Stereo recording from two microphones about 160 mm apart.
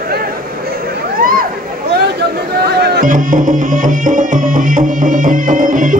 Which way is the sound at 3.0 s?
55° right (ahead or behind).